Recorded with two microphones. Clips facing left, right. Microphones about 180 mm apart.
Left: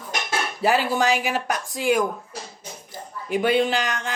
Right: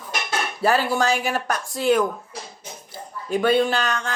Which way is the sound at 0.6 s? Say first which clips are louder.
Even; 15° left (ahead or behind).